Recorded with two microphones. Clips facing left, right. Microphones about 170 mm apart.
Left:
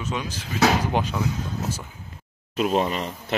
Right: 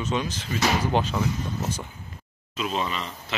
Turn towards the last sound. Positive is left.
turn(degrees=50)  # may be behind; listen again after turning